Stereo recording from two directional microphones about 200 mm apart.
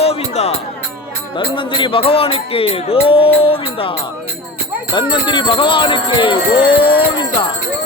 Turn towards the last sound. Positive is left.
turn(degrees=25)  # may be behind; listen again after turning